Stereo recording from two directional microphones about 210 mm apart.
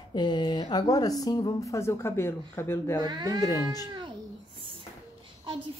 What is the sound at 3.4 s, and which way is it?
Speech, 20° left (ahead or behind).